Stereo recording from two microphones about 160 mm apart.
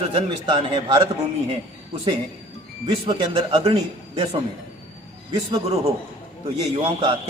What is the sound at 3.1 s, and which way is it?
Speech, 30° right (ahead or behind).